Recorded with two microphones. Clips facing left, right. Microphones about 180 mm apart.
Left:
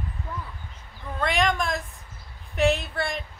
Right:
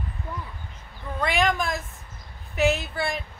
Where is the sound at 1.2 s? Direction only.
Centre (ahead or behind).